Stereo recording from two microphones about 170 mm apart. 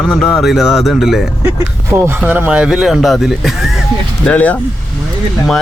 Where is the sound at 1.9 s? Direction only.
15° right (ahead or behind).